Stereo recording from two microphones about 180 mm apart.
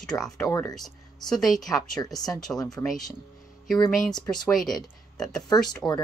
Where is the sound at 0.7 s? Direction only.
Centre (ahead or behind).